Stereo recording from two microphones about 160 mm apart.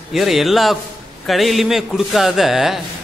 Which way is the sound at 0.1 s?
Centre (ahead or behind).